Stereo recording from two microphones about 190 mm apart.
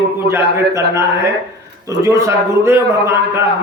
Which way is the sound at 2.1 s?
15° right (ahead or behind).